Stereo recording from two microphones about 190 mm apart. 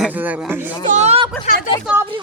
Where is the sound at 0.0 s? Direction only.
10° right (ahead or behind).